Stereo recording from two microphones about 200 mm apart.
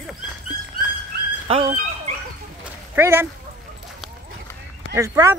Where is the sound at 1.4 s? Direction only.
30° right (ahead or behind).